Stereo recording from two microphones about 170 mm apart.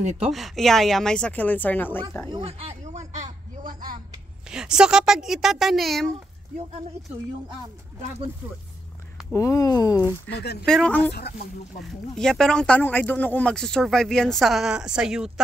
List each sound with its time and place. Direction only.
0.3 s speech: centre (ahead or behind)
2.3 s speech: 35° right (ahead or behind)
4.5 s speech: 5° right (ahead or behind)
9.3 s speech: 20° left (ahead or behind)
10.3 s speech: 70° left (ahead or behind)
10.6 s speech: 5° left (ahead or behind)